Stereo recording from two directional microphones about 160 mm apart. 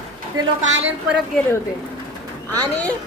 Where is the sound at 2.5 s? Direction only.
10° left (ahead or behind).